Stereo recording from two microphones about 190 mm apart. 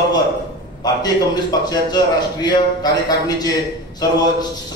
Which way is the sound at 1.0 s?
20° left (ahead or behind).